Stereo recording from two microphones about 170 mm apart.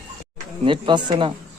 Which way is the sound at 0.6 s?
30° right (ahead or behind).